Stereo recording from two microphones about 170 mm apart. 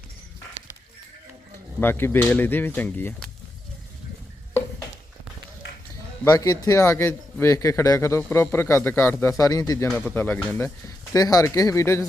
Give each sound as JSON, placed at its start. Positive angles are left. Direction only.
{"t": 1.8, "sound": "a man's voice", "side_deg": 15}
{"t": 6.2, "sound": "a man's voice", "side_deg": 20}
{"t": 9.9, "sound": "speech", "side_deg": -5}
{"t": 10.2, "sound": "a man's voice", "side_deg": 10}